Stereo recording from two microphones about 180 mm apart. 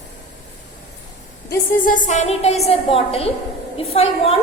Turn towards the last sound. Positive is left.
turn(degrees=35)  # may be behind; listen again after turning